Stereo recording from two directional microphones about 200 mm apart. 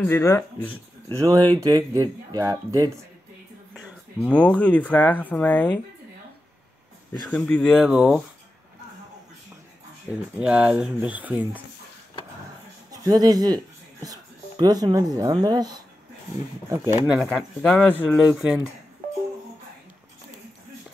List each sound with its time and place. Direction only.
0.0 s speech: 15° left (ahead or behind)
1.1 s speech: 15° right (ahead or behind)
4.2 s speech: 5° left (ahead or behind)
7.2 s speech: 5° left (ahead or behind)
10.4 s speech: 5° right (ahead or behind)
12.9 s speech: 20° right (ahead or behind)
17.3 s speech: 5° left (ahead or behind)